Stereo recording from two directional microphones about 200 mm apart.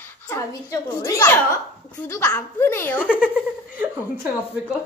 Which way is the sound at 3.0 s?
5° right (ahead or behind).